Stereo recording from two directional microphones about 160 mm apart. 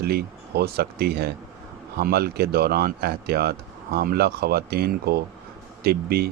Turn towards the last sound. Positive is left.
turn(degrees=-75)  # may be behind; listen again after turning